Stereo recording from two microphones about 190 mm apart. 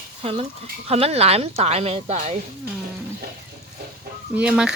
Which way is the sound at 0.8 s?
30° right (ahead or behind).